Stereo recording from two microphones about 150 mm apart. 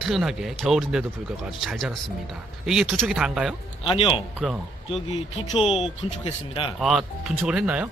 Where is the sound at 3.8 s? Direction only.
35° left (ahead or behind).